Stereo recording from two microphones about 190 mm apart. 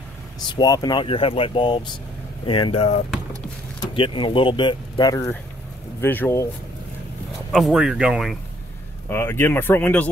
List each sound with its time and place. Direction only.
0.5 s speech: 20° left (ahead or behind)
7.5 s speech: centre (ahead or behind)
9.1 s speech: 10° left (ahead or behind)